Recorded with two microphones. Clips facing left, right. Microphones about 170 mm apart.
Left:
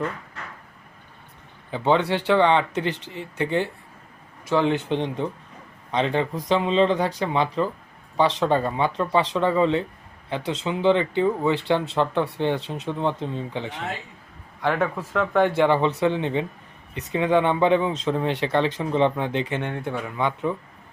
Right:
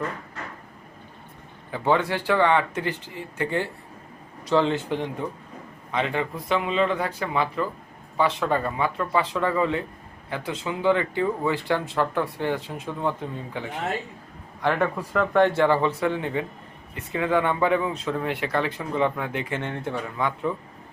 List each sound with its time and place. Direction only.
1.7 s speech: 20° left (ahead or behind)
14.7 s speech: centre (ahead or behind)
15.4 s speech: 15° left (ahead or behind)